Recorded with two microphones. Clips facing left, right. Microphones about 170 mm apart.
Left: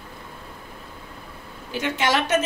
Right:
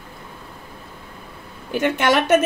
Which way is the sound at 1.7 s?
55° right (ahead or behind).